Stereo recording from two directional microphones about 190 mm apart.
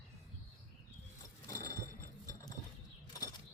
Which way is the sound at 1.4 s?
15° left (ahead or behind).